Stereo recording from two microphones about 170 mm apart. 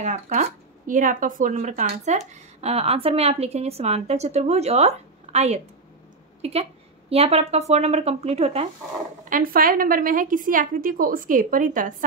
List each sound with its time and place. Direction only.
0.0 s speech: 45° right (ahead or behind)
9.3 s a woman's voice: 55° right (ahead or behind)